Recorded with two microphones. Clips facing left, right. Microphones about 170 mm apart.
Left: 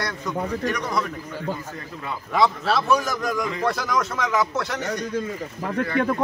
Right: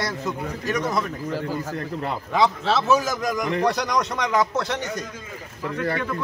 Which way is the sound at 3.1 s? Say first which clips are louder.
Even; 20° right (ahead or behind).